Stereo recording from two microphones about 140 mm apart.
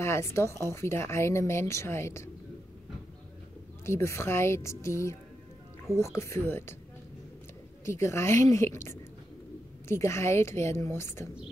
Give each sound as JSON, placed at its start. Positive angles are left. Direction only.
{"t": 0.0, "sound": "speech", "side_deg": 20}
{"t": 3.8, "sound": "speech", "side_deg": 20}
{"t": 7.8, "sound": "speech", "side_deg": 20}